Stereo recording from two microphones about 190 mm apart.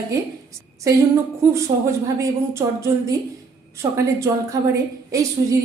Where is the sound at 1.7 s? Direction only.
25° right (ahead or behind).